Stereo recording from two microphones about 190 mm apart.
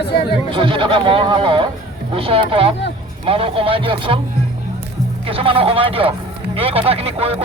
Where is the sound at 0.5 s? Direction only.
25° right (ahead or behind).